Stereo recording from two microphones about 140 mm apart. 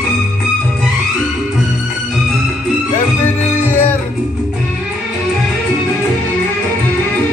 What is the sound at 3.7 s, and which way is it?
Music, 15° left (ahead or behind).